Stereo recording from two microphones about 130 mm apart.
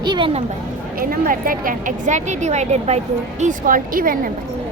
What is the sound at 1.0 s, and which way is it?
A woman's voice, 90° right.